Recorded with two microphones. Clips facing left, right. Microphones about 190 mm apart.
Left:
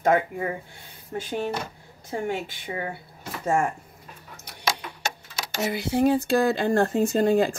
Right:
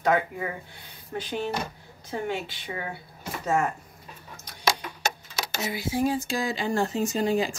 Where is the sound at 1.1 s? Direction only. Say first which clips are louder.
Left 1 dB; 45° left (ahead or behind).